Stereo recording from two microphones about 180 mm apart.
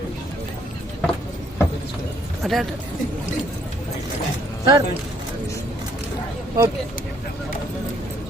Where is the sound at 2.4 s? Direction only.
Centre (ahead or behind).